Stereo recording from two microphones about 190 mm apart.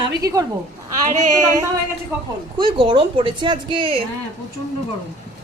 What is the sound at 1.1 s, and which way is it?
Speech, 40° right (ahead or behind).